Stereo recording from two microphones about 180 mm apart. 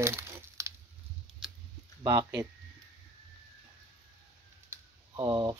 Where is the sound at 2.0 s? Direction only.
20° right (ahead or behind).